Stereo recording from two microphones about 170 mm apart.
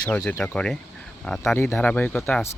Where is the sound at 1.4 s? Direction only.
15° left (ahead or behind).